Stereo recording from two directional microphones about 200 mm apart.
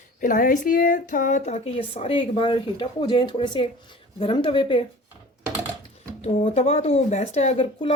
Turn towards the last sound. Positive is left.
turn(degrees=25)  # may be behind; listen again after turning